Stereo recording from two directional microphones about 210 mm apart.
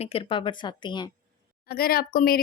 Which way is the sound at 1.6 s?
45° left (ahead or behind).